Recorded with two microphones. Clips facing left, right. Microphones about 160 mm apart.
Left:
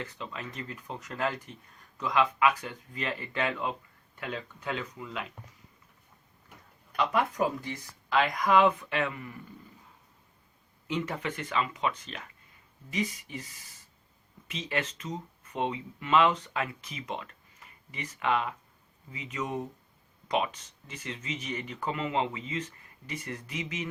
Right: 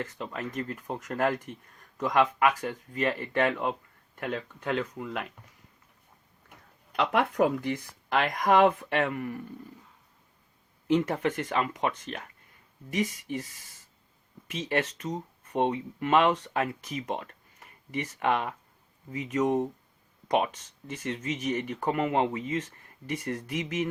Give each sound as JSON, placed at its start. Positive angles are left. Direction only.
{"t": 0.0, "sound": "speech", "side_deg": -50}
{"t": 6.9, "sound": "speech", "side_deg": -70}
{"t": 10.8, "sound": "speech", "side_deg": -50}
{"t": 14.5, "sound": "speech", "side_deg": -45}